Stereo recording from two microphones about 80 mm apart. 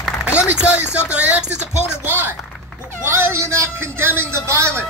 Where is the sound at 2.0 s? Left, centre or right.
Right.